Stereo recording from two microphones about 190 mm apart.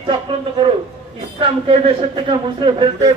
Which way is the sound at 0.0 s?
25° right (ahead or behind).